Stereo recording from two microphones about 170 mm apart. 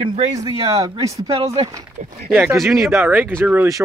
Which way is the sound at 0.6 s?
20° right (ahead or behind).